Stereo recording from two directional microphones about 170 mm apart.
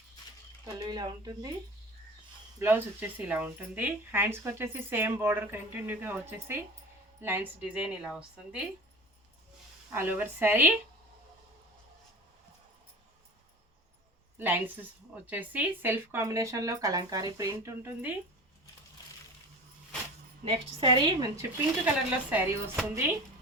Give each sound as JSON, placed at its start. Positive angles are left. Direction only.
{"t": 0.6, "sound": "speech", "side_deg": -25}
{"t": 2.6, "sound": "speech", "side_deg": -10}
{"t": 9.9, "sound": "speech", "side_deg": -10}
{"t": 14.3, "sound": "a woman's voice", "side_deg": -10}
{"t": 20.4, "sound": "speech", "side_deg": -30}
{"t": 21.8, "sound": "speech", "side_deg": -10}